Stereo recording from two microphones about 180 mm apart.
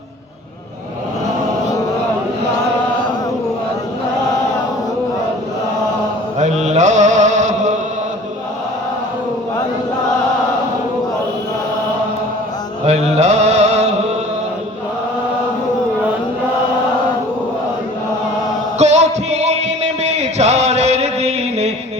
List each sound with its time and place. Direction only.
6.4 s mantra: 40° right (ahead or behind)
12.8 s mantra: 35° right (ahead or behind)
18.8 s music: 40° right (ahead or behind)